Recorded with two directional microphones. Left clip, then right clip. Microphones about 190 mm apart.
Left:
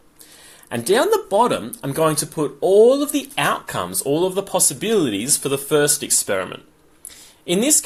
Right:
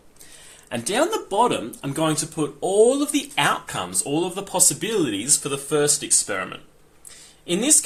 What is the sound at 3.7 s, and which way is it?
Speech, 35° left (ahead or behind).